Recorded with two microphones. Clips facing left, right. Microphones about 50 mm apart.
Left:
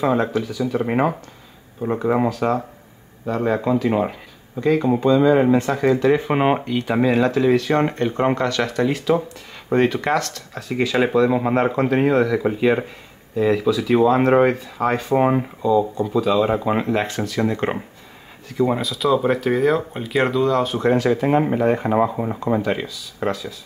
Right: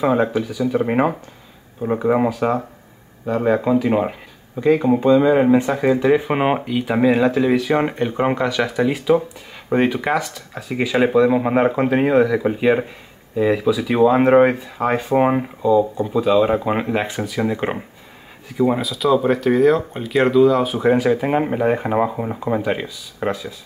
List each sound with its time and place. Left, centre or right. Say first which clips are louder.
0.0 s speech: right 2 dB; centre